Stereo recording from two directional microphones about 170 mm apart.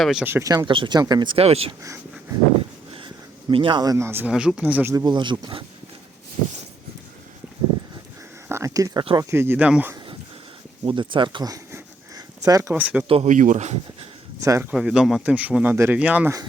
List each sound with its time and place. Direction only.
0.0 s speech: 5° right (ahead or behind); by 1.7 s 35° right (ahead or behind)
3.5 s speech: 30° right (ahead or behind)
8.4 s speech: 15° right (ahead or behind)
10.8 s a sound: 30° right (ahead or behind)
12.7 s speech: 10° right (ahead or behind)
13.1 s speech: 35° right (ahead or behind)
13.3 s speech: 45° right (ahead or behind)
14.4 s speech: 20° right (ahead or behind)
14.7 s speech: 5° right (ahead or behind)